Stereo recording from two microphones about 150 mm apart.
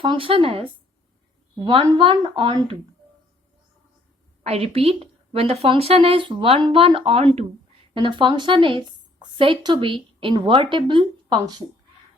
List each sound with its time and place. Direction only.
0.0 s a woman's voice: 35° right (ahead or behind)
4.4 s a woman's voice: 40° right (ahead or behind)